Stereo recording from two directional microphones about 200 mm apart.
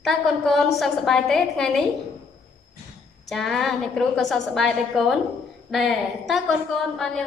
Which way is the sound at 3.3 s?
Centre (ahead or behind).